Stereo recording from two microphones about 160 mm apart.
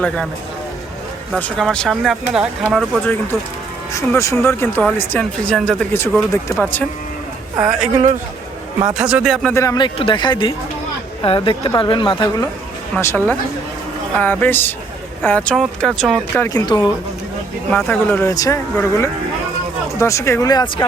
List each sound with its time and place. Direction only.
1.4 s speech: 5° left (ahead or behind)
2.6 s speech: 10° left (ahead or behind)
7.6 s speech: 5° right (ahead or behind)
8.9 s speech: 5° right (ahead or behind)
9.5 s speech: 15° left (ahead or behind)
9.7 s a woman's voice: 30° left (ahead or behind)
13.0 s speech: 15° left (ahead or behind)
16.3 s speech: 15° left (ahead or behind)
17.7 s speech: 10° left (ahead or behind); by 20.8 s 25° left (ahead or behind)